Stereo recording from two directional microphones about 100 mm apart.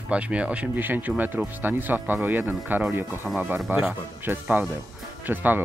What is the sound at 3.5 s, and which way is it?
Speech, 5° right (ahead or behind).